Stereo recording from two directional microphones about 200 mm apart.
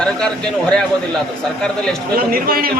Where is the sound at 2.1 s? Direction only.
45° right (ahead or behind).